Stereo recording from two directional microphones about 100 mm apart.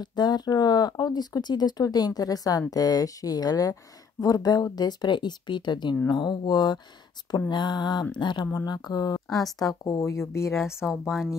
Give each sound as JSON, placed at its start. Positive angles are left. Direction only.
{"t": 0.0, "sound": "speech", "side_deg": 45}
{"t": 10.5, "sound": "speech", "side_deg": -5}